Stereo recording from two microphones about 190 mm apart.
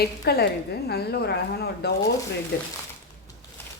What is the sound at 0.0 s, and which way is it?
A woman's voice, 55° left (ahead or behind).